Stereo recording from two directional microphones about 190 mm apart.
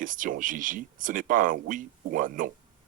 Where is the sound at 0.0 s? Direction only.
45° right (ahead or behind).